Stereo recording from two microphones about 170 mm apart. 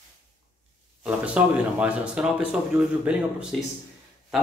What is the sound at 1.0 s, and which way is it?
Speech, 10° right (ahead or behind).